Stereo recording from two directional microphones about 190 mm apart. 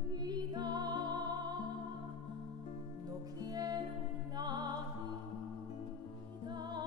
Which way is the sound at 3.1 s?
20° right (ahead or behind).